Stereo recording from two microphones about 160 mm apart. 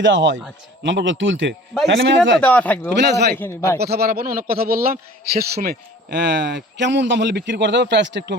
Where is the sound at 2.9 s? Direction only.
90° right.